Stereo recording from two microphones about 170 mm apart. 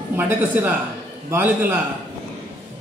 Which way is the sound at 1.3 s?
10° right (ahead or behind).